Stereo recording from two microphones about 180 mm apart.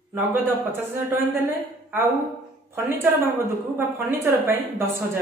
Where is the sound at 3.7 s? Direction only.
10° right (ahead or behind).